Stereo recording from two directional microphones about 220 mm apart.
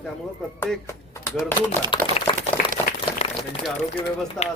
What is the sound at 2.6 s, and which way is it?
Applause, 40° left (ahead or behind).